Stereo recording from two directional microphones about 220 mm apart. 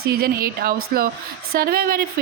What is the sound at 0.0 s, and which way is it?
Speech, 45° right (ahead or behind).